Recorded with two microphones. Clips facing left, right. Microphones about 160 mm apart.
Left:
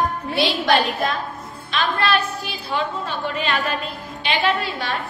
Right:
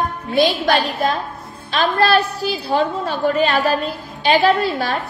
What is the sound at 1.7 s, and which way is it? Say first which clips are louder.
A woman's voice: right 5 dB; 40° right (ahead or behind).